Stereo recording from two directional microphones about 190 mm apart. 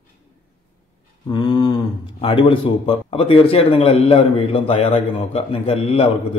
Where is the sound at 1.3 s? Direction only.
25° left (ahead or behind).